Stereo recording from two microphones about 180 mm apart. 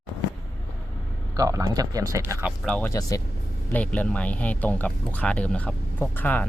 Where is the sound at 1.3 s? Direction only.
20° right (ahead or behind).